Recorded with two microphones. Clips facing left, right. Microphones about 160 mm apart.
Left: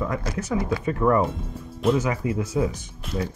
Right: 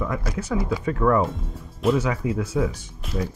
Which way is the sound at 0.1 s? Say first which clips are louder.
Even; 5° right (ahead or behind).